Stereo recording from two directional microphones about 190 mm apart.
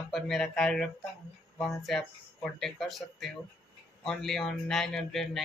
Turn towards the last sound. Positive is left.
turn(degrees=0)  # may be behind; listen again after turning